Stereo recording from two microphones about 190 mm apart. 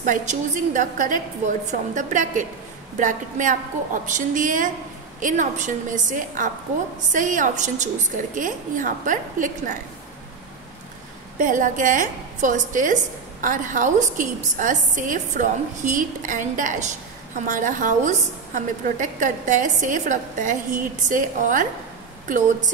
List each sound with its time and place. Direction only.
0.0 s a woman's voice: 40° right (ahead or behind)
11.3 s a woman's voice: 45° right (ahead or behind)